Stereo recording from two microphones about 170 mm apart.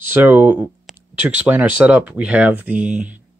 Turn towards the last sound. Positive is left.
turn(degrees=-5)  # may be behind; listen again after turning